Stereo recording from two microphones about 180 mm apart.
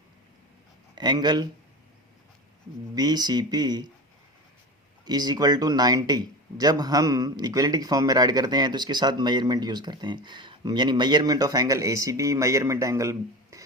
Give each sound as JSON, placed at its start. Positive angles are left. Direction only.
{"t": 0.9, "sound": "a man's voice", "side_deg": -25}
{"t": 2.9, "sound": "a man's voice", "side_deg": -20}
{"t": 5.0, "sound": "a man's voice", "side_deg": -20}